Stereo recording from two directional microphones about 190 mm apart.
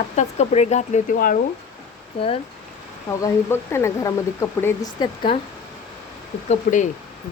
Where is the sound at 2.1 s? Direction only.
30° left (ahead or behind).